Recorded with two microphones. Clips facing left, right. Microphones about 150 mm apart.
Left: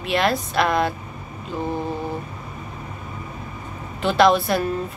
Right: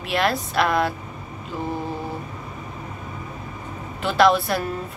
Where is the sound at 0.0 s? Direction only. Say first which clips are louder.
Left 2 dB; centre (ahead or behind).